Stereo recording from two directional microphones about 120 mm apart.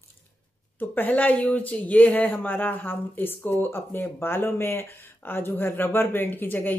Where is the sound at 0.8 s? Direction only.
15° left (ahead or behind).